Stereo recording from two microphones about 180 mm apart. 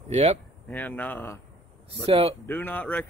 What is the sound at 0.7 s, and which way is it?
Speech, 10° left (ahead or behind).